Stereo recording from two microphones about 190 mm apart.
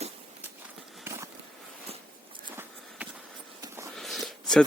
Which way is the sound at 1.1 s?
10° right (ahead or behind).